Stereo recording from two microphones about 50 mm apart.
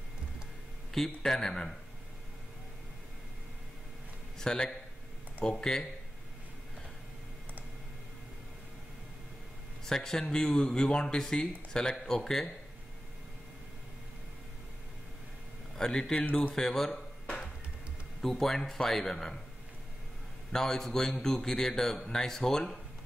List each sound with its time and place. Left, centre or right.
0.9 s a man's voice: centre
4.4 s a man's voice: centre
9.8 s a man's voice: centre
15.7 s speech: centre
16.2 s speech: left
16.5 s a sound: centre
18.2 s a man's voice: centre
20.5 s a man's voice: centre